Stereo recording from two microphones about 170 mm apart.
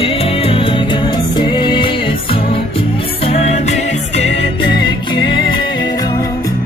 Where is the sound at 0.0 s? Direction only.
35° left (ahead or behind).